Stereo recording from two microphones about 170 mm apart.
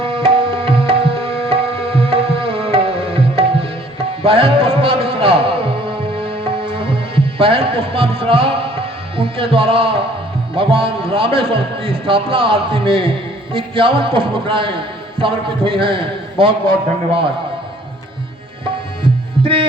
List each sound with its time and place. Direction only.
0.0 s tabla: 30° right (ahead or behind)
4.2 s a man's voice: 35° right (ahead or behind)
5.0 s music: 35° right (ahead or behind)
10.5 s a man's voice: 30° right (ahead or behind)
19.4 s music: 35° right (ahead or behind)